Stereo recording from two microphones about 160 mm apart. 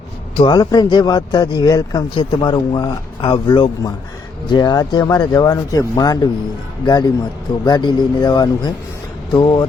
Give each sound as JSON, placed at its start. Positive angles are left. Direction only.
{"t": 0.3, "sound": "speech", "side_deg": 25}